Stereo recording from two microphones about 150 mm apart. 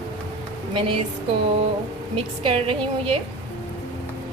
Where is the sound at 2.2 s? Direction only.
40° right (ahead or behind).